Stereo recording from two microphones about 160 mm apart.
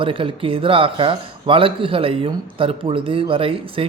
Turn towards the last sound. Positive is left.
turn(degrees=-35)  # may be behind; listen again after turning